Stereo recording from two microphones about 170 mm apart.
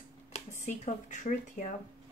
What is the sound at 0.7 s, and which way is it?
Speech, 45° left (ahead or behind).